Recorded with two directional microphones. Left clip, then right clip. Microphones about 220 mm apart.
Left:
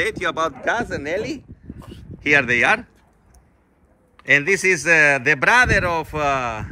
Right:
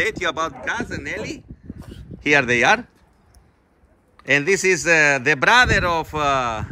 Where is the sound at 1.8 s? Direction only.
15° left (ahead or behind).